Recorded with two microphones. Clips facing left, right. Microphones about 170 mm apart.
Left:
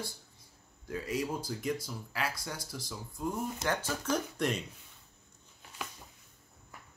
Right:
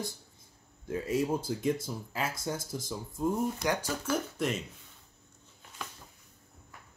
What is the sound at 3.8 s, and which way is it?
Speech, 5° right (ahead or behind).